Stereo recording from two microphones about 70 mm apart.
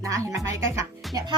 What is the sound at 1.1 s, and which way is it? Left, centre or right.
Speech, right.